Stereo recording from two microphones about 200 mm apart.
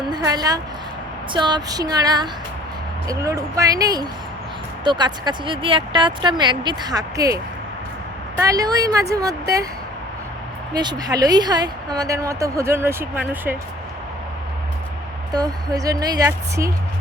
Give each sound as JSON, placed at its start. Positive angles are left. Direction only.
{"t": 0.1, "sound": "a woman's voice", "side_deg": -20}
{"t": 8.4, "sound": "a woman's voice", "side_deg": -15}
{"t": 10.8, "sound": "a woman's voice", "side_deg": -20}
{"t": 15.3, "sound": "a woman's voice", "side_deg": -20}